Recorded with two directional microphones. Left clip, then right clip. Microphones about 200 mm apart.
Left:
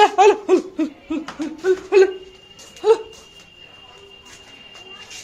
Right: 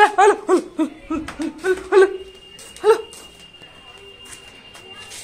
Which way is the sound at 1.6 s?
Centre (ahead or behind).